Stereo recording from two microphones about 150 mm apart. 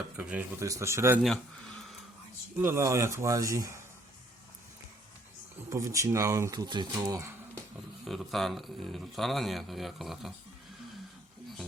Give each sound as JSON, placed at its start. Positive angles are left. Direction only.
{"t": 0.2, "sound": "speech", "side_deg": -10}
{"t": 0.6, "sound": "speech", "side_deg": -20}
{"t": 1.2, "sound": "speech", "side_deg": 5}
{"t": 2.6, "sound": "speech", "side_deg": -15}
{"t": 5.7, "sound": "speech", "side_deg": -20}
{"t": 8.0, "sound": "speech", "side_deg": 0}